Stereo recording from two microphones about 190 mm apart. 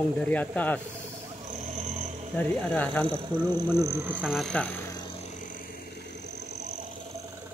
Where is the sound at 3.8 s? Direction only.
15° right (ahead or behind); by 4.7 s 5° left (ahead or behind).